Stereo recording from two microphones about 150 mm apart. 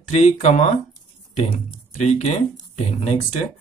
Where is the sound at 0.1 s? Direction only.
50° left (ahead or behind).